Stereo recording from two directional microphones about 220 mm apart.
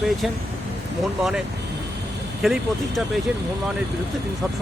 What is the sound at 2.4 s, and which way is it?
Speech, centre (ahead or behind).